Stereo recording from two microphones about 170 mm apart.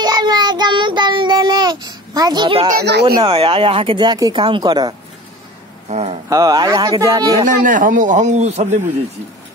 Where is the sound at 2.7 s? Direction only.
70° right (ahead or behind).